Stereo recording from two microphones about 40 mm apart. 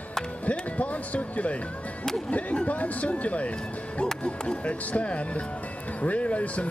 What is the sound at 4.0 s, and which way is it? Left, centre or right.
Speech, left.